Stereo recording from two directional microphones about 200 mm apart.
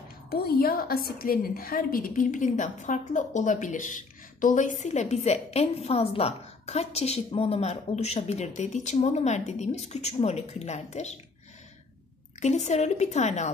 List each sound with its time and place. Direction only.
0.3 s a woman's voice: 50° left (ahead or behind)
12.4 s a woman's voice: 35° left (ahead or behind)